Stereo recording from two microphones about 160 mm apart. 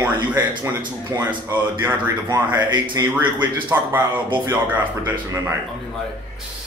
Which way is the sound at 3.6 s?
10° right (ahead or behind).